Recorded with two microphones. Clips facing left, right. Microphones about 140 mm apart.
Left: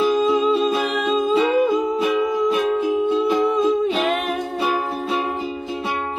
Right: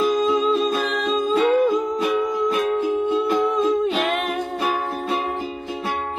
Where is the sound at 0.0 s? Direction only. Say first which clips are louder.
Left 2 dB; 5° left (ahead or behind).